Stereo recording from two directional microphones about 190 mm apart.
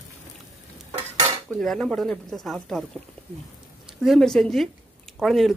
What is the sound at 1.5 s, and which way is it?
Speech, 5° left (ahead or behind).